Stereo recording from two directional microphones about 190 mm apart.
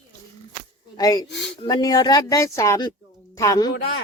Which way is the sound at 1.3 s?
65° left (ahead or behind).